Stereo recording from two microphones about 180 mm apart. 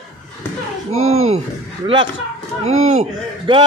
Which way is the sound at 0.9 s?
35° right (ahead or behind).